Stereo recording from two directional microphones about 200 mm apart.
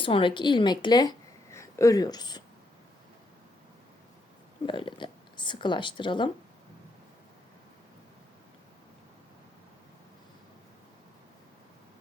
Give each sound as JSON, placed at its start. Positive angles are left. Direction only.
{"t": 0.0, "sound": "a woman's voice", "side_deg": 25}
{"t": 4.6, "sound": "speech", "side_deg": 25}